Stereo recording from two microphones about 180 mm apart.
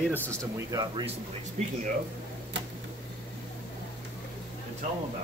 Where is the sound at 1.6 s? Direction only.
40° right (ahead or behind).